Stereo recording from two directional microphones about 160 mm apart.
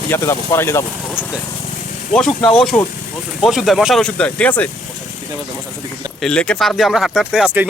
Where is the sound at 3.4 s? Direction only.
Centre (ahead or behind).